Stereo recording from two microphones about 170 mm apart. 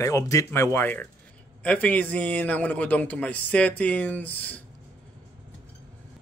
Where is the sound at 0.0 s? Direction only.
20° left (ahead or behind).